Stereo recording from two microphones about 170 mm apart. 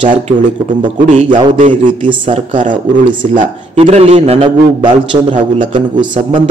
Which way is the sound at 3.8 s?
35° right (ahead or behind).